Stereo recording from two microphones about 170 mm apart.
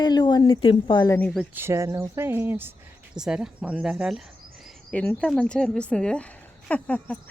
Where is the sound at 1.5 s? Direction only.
15° right (ahead or behind).